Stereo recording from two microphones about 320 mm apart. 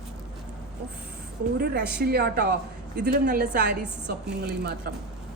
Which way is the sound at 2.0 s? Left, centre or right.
Right.